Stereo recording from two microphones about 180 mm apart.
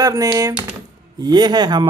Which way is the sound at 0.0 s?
20° right (ahead or behind).